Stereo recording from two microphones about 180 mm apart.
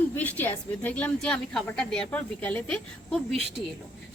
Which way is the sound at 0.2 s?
10° left (ahead or behind).